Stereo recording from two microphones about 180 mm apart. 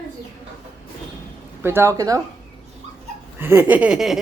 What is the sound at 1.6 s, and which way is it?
Speech, 15° right (ahead or behind).